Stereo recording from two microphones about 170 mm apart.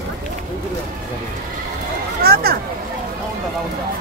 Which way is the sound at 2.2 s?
65° right (ahead or behind).